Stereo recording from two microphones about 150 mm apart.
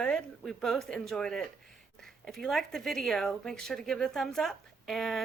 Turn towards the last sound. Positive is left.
turn(degrees=0)  # may be behind; listen again after turning